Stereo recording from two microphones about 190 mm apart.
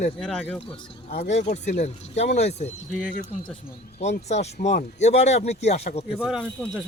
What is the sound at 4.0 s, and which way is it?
Speech, 35° left (ahead or behind).